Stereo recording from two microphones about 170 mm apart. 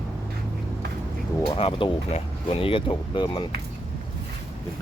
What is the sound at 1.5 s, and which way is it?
Speech, 30° left (ahead or behind).